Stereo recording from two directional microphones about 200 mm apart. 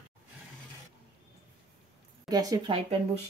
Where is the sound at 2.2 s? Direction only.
20° right (ahead or behind).